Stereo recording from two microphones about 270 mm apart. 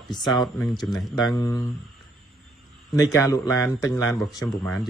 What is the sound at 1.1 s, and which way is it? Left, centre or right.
Speech, centre.